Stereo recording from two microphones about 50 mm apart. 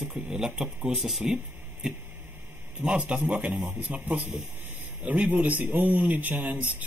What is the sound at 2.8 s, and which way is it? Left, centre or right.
A man's voice, right.